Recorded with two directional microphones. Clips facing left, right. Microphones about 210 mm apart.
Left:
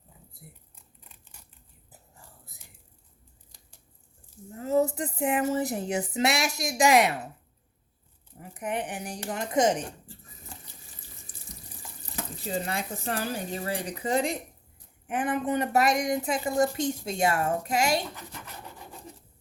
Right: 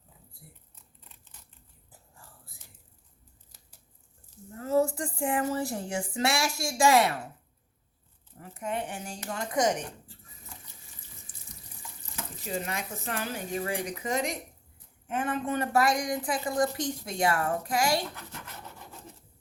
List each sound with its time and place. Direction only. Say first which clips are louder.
1.0 s a sound: left 1 dB; 10° left (ahead or behind)
1.9 s whispering: left 1 dB; 20° left (ahead or behind)
4.5 s speech: left 1 dB; 20° left (ahead or behind)
8.4 s speech: left 1 dB; 15° left (ahead or behind)
10.5 s water tap: left 2 dB; 30° left (ahead or behind)
13.8 s speech: left 3 dB; 35° left (ahead or behind)
15.0 s speech: left 3 dB; 15° left (ahead or behind)